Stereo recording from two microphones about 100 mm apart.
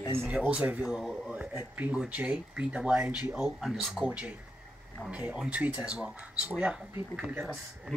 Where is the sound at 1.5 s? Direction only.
15° right (ahead or behind).